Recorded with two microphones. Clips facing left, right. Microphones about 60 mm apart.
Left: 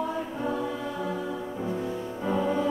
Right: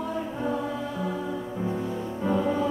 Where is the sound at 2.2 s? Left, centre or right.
Centre.